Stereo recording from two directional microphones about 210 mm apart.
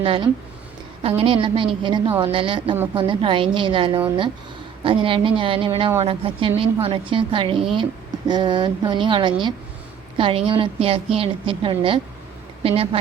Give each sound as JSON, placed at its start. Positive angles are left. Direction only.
{"t": 0.0, "sound": "a woman's voice", "side_deg": -25}